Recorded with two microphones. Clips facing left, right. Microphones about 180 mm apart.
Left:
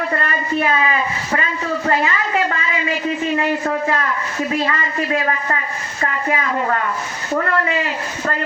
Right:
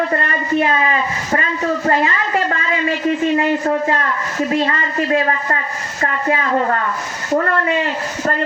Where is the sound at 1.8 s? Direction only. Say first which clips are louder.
Left 1 dB; 40° right (ahead or behind).